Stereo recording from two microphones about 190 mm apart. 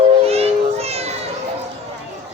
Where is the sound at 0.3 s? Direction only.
35° right (ahead or behind).